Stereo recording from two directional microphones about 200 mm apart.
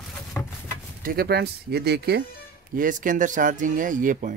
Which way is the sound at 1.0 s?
50° right (ahead or behind).